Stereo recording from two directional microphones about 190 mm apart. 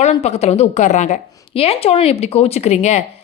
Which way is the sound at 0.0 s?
35° left (ahead or behind).